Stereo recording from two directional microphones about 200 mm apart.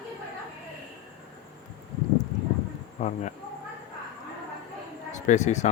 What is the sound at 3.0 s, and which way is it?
Speech, 40° left (ahead or behind).